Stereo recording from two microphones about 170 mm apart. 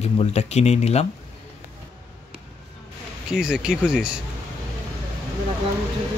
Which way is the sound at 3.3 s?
5° right (ahead or behind).